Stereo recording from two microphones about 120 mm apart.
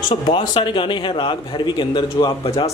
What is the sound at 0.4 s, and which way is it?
A man's voice, 40° left (ahead or behind).